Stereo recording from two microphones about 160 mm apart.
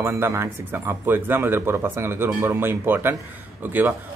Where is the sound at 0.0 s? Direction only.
15° right (ahead or behind).